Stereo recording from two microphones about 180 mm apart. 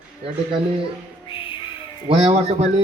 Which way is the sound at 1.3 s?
30° left (ahead or behind).